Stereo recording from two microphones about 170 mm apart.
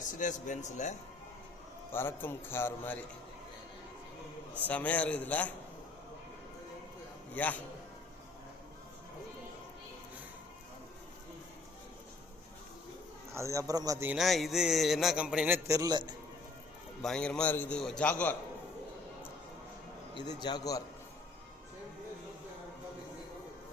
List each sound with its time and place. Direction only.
0.2 s a man's voice: 45° left (ahead or behind)
1.9 s a man's voice: 15° left (ahead or behind)
4.7 s a man's voice: 10° left (ahead or behind)
7.3 s a man's voice: 10° left (ahead or behind)
13.3 s a man's voice: 20° right (ahead or behind)
14.1 s a man's voice: centre (ahead or behind); by 16.1 s 25° right (ahead or behind)
17.0 s a man's voice: 5° left (ahead or behind)
20.4 s a man's voice: 25° left (ahead or behind)